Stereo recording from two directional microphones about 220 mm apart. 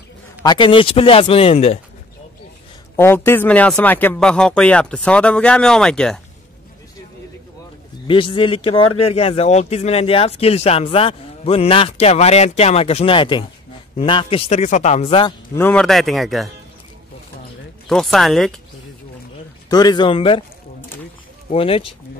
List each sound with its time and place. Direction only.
0.4 s speech: 20° left (ahead or behind)
3.0 s speech: 10° left (ahead or behind)
8.1 s speech: 25° left (ahead or behind)
15.5 s speech: 5° left (ahead or behind)
17.8 s speech: centre (ahead or behind)
19.7 s speech: 20° left (ahead or behind)
21.5 s speech: 25° left (ahead or behind)